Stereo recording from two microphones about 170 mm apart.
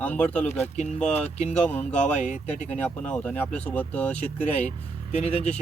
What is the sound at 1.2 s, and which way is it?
Speech, 40° left (ahead or behind).